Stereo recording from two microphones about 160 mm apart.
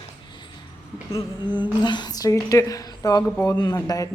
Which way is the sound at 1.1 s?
30° left (ahead or behind).